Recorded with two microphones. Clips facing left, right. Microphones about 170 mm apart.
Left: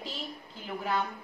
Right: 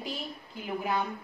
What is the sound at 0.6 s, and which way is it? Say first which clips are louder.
Speech: right 1 dB; 15° right (ahead or behind).